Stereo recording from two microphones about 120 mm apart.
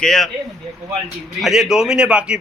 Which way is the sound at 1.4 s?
5° right (ahead or behind).